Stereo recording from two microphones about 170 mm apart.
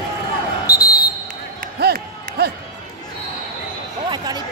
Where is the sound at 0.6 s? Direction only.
60° left (ahead or behind).